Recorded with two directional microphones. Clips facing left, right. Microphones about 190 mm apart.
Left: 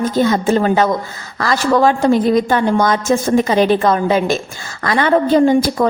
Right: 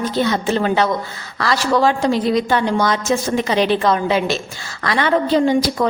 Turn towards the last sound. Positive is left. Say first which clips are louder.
# left 4 dB
turn(degrees=50)  # may be behind; listen again after turning